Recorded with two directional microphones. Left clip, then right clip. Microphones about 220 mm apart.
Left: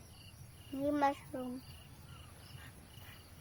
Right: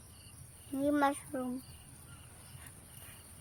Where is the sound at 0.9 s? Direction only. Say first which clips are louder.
Right 2 dB; 30° right (ahead or behind).